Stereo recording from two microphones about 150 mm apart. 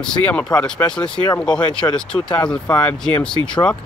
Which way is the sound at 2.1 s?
35° left (ahead or behind).